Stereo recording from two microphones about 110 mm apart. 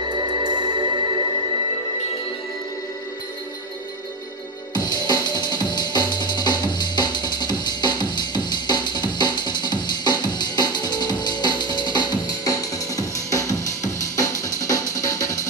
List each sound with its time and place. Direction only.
0.1 s music: 40° right (ahead or behind)
4.7 s music: 40° left (ahead or behind)